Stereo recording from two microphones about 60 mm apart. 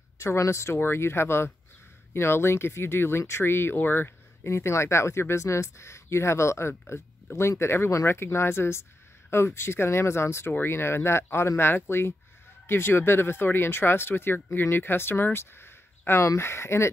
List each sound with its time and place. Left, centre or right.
0.4 s speech: left
0.7 s speech: left
4.5 s speech: left